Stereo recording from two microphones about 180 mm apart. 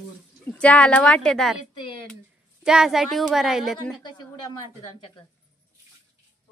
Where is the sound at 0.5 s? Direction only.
5° left (ahead or behind).